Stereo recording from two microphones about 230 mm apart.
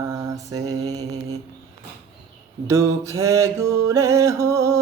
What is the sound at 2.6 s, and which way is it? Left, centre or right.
Speech, centre.